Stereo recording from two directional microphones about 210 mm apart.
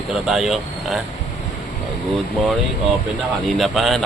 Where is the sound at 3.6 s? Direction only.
Centre (ahead or behind).